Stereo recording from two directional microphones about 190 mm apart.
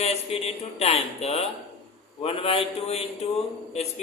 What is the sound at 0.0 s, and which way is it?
Speech, 35° left (ahead or behind).